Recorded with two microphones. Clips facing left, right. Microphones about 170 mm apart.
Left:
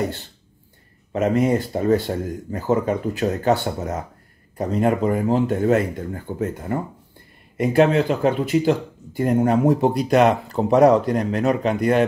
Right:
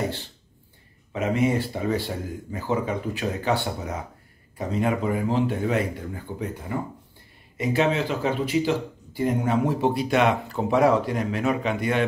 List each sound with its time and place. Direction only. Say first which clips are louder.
1.1 s speech: left 4 dB; 45° left (ahead or behind)